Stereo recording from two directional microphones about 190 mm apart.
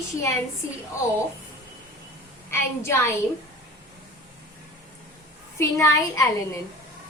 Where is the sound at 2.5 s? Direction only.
10° left (ahead or behind).